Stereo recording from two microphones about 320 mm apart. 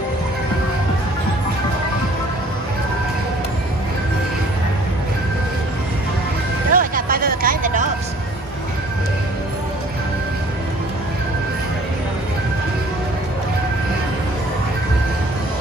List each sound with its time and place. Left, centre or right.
6.7 s vehicle: right